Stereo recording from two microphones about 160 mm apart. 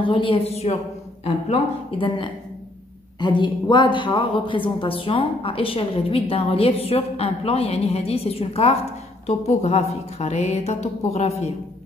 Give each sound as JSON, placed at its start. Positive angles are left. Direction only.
{"t": 0.0, "sound": "a woman's voice", "side_deg": 30}